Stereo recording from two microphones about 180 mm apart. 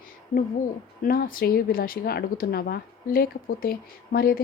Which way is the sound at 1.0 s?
55° left (ahead or behind).